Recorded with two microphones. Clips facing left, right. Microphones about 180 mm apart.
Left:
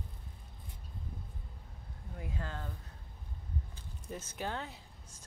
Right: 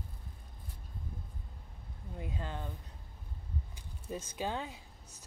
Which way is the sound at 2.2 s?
20° right (ahead or behind).